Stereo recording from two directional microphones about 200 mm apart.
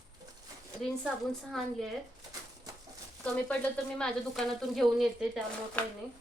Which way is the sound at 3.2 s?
5° left (ahead or behind).